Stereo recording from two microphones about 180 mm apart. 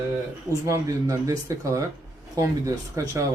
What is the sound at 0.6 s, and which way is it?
Speech, 15° right (ahead or behind).